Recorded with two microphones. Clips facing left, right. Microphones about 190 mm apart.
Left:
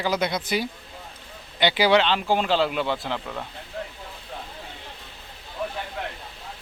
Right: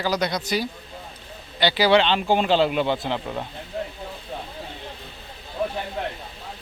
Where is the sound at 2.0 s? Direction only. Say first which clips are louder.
Right 2 dB; 5° left (ahead or behind).